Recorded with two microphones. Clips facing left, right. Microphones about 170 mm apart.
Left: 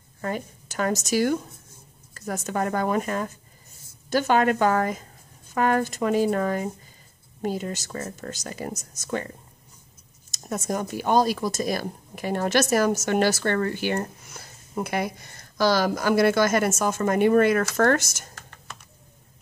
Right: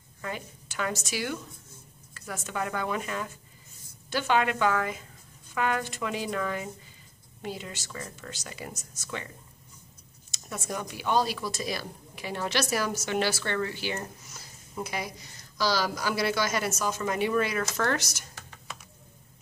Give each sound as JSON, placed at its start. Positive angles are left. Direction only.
{"t": 0.2, "sound": "speech", "side_deg": 45}
{"t": 10.3, "sound": "speech", "side_deg": 45}